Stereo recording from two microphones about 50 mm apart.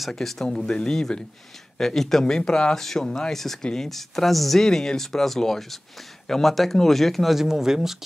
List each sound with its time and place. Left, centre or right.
0.0 s speech: centre
7.3 s speech: centre